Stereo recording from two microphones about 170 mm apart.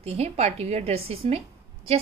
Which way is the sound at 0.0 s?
40° right (ahead or behind).